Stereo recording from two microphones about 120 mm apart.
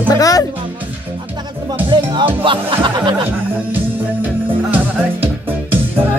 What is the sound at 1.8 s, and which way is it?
Speech, 40° right (ahead or behind).